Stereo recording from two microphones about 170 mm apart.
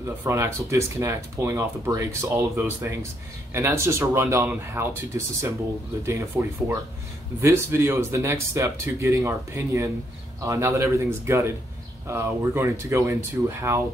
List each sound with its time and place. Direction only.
0.0 s speech: 15° right (ahead or behind)